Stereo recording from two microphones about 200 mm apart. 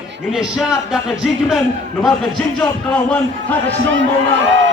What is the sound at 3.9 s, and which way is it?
Speech, 65° right (ahead or behind).